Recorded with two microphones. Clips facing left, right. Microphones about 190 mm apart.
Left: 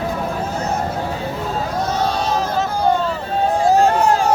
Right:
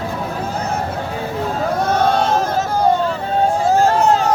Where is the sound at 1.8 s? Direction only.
55° right (ahead or behind).